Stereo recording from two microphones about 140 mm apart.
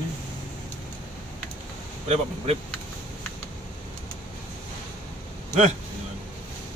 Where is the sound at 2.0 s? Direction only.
50° right (ahead or behind).